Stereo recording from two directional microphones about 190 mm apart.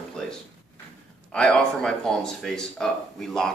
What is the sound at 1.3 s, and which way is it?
Speech, 5° left (ahead or behind).